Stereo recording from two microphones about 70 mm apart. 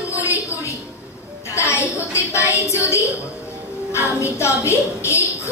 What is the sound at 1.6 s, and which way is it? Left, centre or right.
Music, left.